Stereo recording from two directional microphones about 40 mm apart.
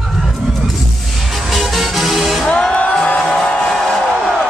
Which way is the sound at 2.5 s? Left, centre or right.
Left.